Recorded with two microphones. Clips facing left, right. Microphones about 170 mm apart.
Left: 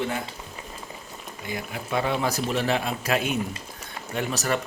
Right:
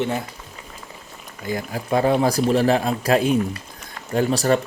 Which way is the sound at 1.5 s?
35° right (ahead or behind).